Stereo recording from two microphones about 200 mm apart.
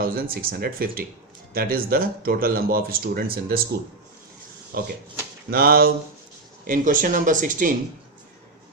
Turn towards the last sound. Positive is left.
turn(degrees=-40)  # may be behind; listen again after turning